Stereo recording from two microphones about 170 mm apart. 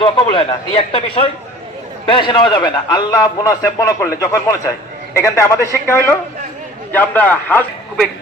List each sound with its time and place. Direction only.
0.0 s a man's voice: 35° left (ahead or behind); by 8.0 s 10° left (ahead or behind)